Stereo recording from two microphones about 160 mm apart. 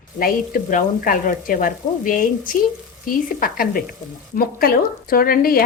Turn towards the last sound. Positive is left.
turn(degrees=65)  # may be behind; listen again after turning